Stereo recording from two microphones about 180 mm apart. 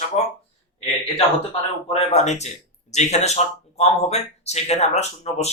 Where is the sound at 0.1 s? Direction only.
40° left (ahead or behind).